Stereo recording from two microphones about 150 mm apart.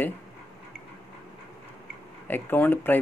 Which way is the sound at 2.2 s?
15° left (ahead or behind).